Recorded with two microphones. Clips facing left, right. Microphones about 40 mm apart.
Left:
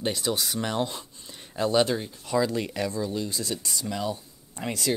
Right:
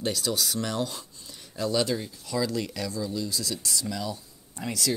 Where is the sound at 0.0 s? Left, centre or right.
Left.